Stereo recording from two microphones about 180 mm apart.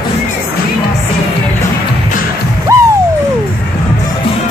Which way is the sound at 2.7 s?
15° right (ahead or behind).